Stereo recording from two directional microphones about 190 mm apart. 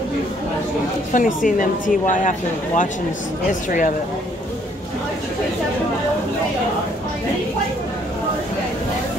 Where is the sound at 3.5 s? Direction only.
45° left (ahead or behind).